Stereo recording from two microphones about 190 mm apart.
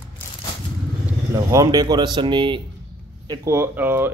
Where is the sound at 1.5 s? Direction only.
20° right (ahead or behind).